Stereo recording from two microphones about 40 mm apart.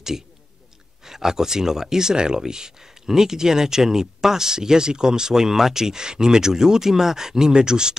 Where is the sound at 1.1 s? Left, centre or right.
Centre.